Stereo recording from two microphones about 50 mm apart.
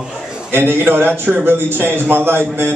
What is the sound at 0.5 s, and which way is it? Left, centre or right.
A man's voice, right.